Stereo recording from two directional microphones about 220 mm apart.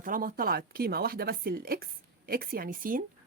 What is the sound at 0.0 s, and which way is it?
A woman's voice, 40° right (ahead or behind).